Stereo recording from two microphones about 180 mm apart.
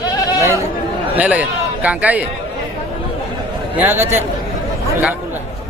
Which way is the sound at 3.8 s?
10° right (ahead or behind).